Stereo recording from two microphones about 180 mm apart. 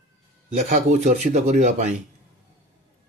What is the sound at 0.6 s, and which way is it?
Speech, 40° right (ahead or behind).